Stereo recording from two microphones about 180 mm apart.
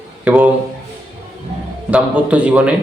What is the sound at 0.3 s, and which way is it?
Speech, 5° right (ahead or behind).